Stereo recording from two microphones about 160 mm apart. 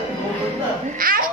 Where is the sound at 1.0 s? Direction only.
60° right (ahead or behind).